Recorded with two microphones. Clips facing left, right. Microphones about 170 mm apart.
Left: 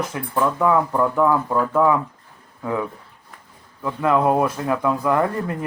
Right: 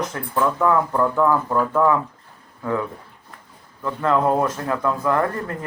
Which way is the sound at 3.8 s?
10° left (ahead or behind).